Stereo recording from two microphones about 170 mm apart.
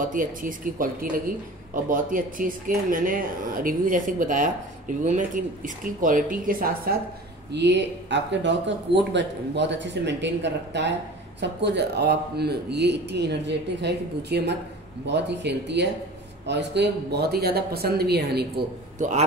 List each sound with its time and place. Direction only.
0.0 s speech: 55° right (ahead or behind)
7.5 s a woman's voice: 90° right; by 12.5 s 75° right (ahead or behind)
12.7 s a woman's voice: 90° right; by 18.5 s 75° right (ahead or behind)
18.9 s speech: 45° right (ahead or behind)